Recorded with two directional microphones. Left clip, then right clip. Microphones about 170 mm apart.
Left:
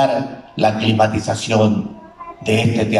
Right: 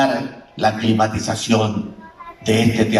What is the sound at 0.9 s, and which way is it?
A man's voice, 25° left (ahead or behind).